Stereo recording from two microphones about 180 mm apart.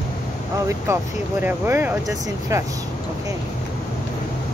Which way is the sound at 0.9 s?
15° right (ahead or behind).